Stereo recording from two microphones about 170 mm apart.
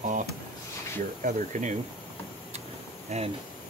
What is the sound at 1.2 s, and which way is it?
Speech, 45° right (ahead or behind).